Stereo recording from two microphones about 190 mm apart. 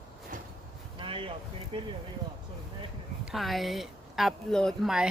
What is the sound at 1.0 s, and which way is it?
Speech, 30° right (ahead or behind).